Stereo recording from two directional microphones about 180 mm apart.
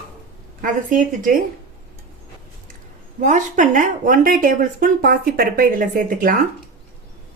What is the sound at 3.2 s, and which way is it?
Speech, 45° right (ahead or behind).